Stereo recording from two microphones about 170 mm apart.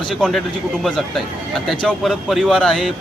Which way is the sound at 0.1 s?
Centre (ahead or behind).